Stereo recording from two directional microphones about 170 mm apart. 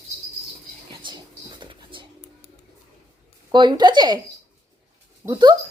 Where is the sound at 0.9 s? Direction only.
30° right (ahead or behind).